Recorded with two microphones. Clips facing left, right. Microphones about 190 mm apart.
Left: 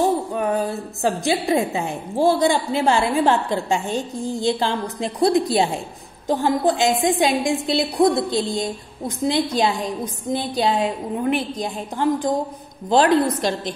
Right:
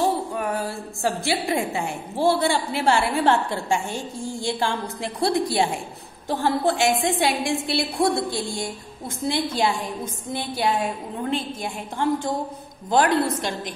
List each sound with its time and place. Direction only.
0.0 s a woman's voice: 20° left (ahead or behind)